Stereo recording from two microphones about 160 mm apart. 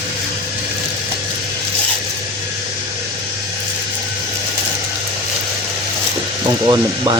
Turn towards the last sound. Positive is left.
turn(degrees=-25)  # may be behind; listen again after turning